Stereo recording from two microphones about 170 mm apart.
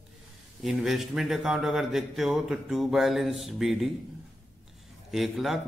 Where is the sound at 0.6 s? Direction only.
Centre (ahead or behind).